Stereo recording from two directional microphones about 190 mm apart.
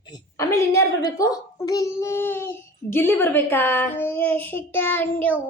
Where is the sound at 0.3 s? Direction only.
15° left (ahead or behind).